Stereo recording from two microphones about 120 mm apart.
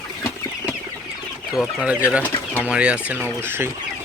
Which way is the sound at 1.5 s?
5° right (ahead or behind).